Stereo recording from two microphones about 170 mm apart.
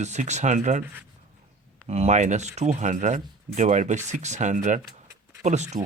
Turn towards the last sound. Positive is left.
turn(degrees=-40)  # may be behind; listen again after turning